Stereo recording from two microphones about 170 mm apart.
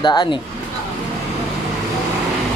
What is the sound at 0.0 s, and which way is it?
Speech, 30° left (ahead or behind).